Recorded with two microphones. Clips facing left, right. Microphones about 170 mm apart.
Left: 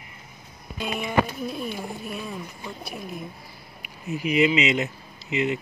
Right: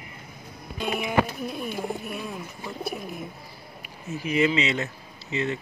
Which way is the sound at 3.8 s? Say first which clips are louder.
Left 4 dB; 15° left (ahead or behind).